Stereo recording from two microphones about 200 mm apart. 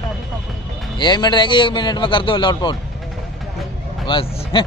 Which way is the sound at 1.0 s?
20° left (ahead or behind).